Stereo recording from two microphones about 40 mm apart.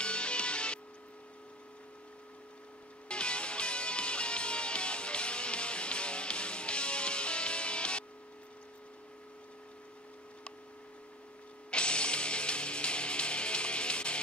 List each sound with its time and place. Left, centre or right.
0.0 s music: left
3.1 s music: left
11.7 s music: left